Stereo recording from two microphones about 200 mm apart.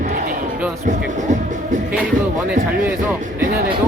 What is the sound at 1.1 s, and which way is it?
Music, 40° right (ahead or behind).